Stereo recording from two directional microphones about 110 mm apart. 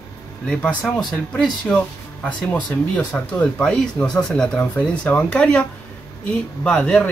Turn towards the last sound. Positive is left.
turn(degrees=5)  # may be behind; listen again after turning